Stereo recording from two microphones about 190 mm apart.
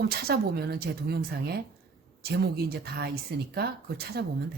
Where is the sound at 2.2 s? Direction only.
55° right (ahead or behind).